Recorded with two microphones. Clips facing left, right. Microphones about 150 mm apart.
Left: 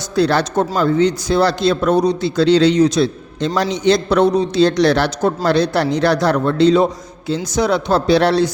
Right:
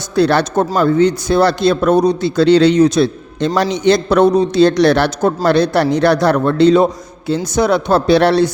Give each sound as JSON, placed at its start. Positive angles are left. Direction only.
{"t": 0.2, "sound": "a man's voice", "side_deg": -60}